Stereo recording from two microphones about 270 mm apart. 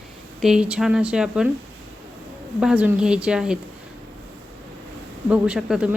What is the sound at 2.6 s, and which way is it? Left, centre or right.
Speech, centre.